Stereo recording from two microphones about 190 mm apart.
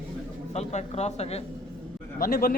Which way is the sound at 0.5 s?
35° left (ahead or behind).